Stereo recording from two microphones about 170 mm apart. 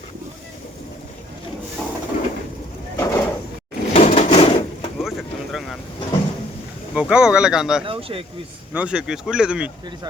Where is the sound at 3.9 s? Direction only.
35° left (ahead or behind).